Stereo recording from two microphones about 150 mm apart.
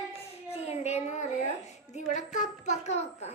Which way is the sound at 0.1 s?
45° left (ahead or behind).